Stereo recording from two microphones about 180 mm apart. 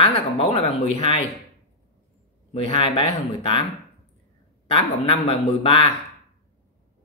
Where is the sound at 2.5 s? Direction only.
35° left (ahead or behind).